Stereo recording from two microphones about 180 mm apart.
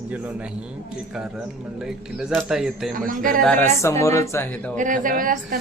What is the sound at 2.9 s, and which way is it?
Speech, 50° right (ahead or behind).